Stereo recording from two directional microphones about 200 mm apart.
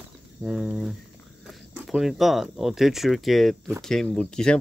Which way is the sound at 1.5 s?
Centre (ahead or behind).